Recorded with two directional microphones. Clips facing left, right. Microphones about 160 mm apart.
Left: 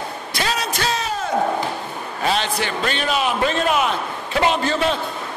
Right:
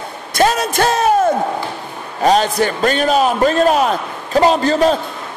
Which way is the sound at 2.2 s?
40° right (ahead or behind).